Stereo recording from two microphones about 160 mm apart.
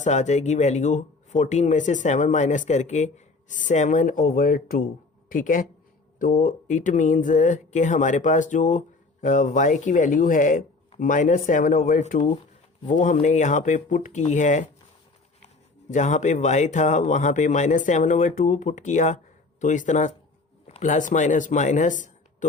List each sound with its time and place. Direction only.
0.0 s speech: 45° left (ahead or behind)
15.9 s speech: 50° left (ahead or behind)